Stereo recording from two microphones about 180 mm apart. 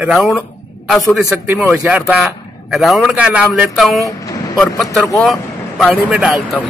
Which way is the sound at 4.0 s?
20° left (ahead or behind).